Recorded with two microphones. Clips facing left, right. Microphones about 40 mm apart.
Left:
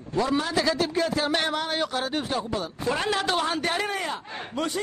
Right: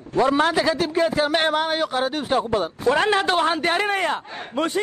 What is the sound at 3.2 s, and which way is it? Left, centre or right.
A man's voice, right.